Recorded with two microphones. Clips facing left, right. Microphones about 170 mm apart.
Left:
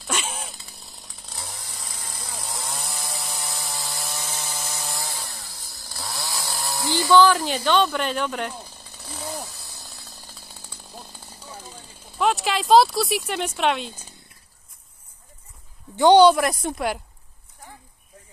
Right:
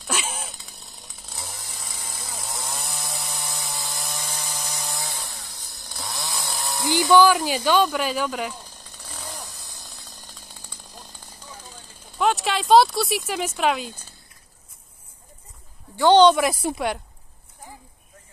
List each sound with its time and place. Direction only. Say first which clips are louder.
0.0 s chainsaw: even; centre (ahead or behind)
7.2 s speech: left 1 dB; 5° right (ahead or behind)
8.8 s chainsaw: left 6 dB; 10° left (ahead or behind)
12.2 s speech: even; centre (ahead or behind)
16.0 s speech: left 1 dB; 10° left (ahead or behind)
16.3 s speech: right 1 dB; centre (ahead or behind)